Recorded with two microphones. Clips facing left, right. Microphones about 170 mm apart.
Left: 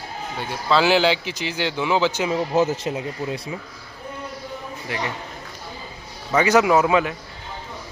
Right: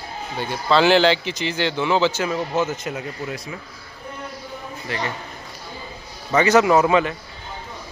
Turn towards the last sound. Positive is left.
turn(degrees=5)  # may be behind; listen again after turning